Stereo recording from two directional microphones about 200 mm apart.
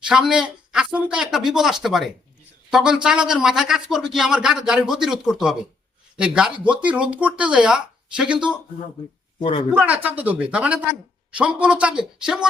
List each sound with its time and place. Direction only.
0.1 s speech: 5° right (ahead or behind)
9.4 s speech: 25° left (ahead or behind)
9.7 s speech: 5° right (ahead or behind)